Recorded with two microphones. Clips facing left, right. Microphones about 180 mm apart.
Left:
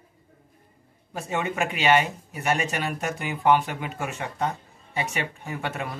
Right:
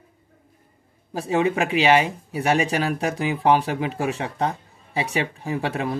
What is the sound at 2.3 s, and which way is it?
Speech, 35° right (ahead or behind).